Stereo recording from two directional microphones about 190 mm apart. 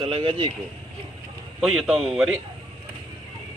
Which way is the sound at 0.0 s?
30° right (ahead or behind).